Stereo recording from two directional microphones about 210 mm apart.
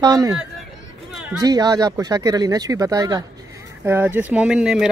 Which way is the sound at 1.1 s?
Centre (ahead or behind).